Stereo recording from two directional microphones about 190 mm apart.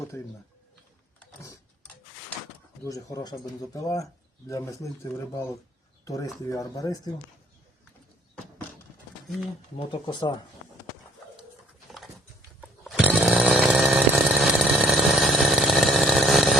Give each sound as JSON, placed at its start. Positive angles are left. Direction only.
{"t": 2.8, "sound": "speech", "side_deg": 20}
{"t": 9.7, "sound": "speech", "side_deg": 25}
{"t": 11.9, "sound": "patter", "side_deg": 0}
{"t": 12.8, "sound": "chainsaw", "side_deg": -5}